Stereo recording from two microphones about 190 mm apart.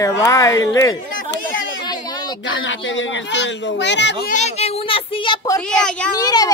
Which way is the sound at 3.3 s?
70° left (ahead or behind).